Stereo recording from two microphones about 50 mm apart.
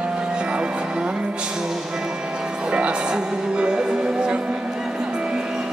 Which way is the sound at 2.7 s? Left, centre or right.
Right.